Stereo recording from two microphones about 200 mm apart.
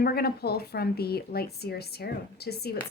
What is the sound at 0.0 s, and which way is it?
A woman's voice, 50° left (ahead or behind).